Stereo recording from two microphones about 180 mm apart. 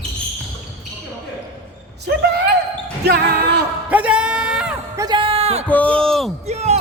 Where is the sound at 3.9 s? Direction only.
5° right (ahead or behind).